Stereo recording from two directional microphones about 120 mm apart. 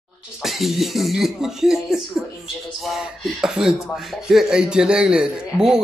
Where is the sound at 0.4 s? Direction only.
Centre (ahead or behind).